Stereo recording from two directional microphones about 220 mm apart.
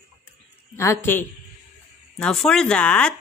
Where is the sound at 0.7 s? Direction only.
10° left (ahead or behind).